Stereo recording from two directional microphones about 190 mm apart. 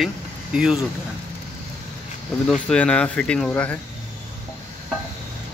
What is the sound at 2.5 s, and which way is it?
Speech, 5° left (ahead or behind).